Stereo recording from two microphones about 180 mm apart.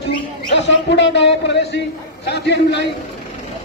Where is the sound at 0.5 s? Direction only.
85° left; by 2.9 s 70° left (ahead or behind).